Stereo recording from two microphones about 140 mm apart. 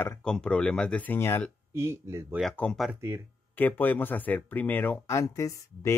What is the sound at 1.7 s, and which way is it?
Speech, 20° right (ahead or behind).